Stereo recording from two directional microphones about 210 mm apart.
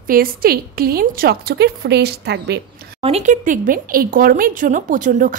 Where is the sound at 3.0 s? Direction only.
30° right (ahead or behind).